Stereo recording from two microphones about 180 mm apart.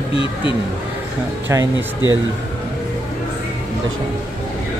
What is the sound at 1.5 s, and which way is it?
Speech, 15° right (ahead or behind).